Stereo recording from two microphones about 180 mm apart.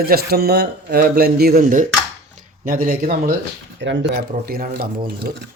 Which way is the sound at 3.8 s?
75° right (ahead or behind).